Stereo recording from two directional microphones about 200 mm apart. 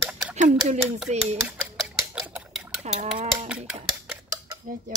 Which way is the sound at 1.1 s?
35° right (ahead or behind).